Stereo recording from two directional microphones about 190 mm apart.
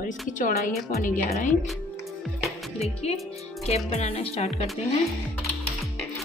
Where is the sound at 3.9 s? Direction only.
35° left (ahead or behind).